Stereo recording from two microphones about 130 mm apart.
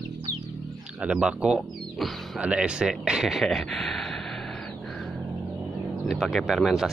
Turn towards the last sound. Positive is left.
turn(degrees=0)  # may be behind; listen again after turning